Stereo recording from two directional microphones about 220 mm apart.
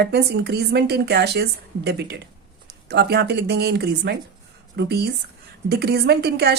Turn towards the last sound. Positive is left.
turn(degrees=-50)  # may be behind; listen again after turning